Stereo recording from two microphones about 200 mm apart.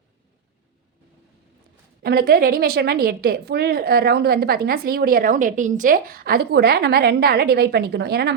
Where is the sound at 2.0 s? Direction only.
50° right (ahead or behind).